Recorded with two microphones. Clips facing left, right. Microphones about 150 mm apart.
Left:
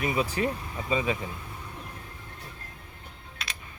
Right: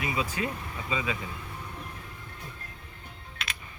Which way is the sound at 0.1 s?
35° left (ahead or behind).